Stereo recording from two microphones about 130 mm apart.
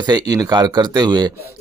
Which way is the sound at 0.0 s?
30° right (ahead or behind).